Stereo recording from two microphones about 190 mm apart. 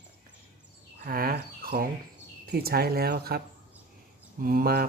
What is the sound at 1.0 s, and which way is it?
Speech, 50° right (ahead or behind).